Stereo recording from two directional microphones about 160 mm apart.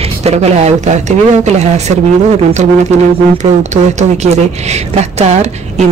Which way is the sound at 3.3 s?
50° right (ahead or behind).